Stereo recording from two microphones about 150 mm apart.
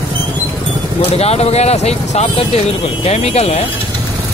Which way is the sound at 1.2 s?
45° left (ahead or behind).